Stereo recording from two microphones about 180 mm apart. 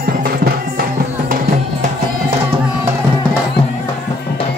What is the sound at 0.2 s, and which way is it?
Music, 60° right (ahead or behind).